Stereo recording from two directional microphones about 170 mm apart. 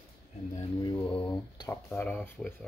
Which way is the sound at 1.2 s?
25° left (ahead or behind).